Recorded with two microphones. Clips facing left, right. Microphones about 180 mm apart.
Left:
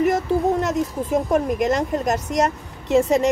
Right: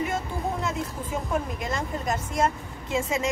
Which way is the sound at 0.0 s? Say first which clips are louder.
Left 10 dB; 80° left.